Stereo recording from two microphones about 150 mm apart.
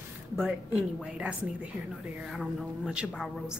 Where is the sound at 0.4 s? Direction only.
Centre (ahead or behind).